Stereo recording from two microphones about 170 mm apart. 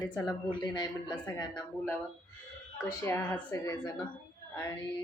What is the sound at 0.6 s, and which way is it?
Speech, 25° left (ahead or behind).